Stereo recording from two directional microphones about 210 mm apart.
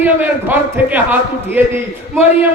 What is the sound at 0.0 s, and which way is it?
A man's voice, 10° right (ahead or behind).